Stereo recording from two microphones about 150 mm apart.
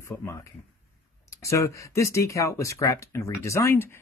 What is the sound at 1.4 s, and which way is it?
Speech, 20° left (ahead or behind).